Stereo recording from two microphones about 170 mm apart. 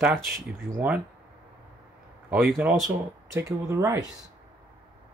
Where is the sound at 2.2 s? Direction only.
10° right (ahead or behind).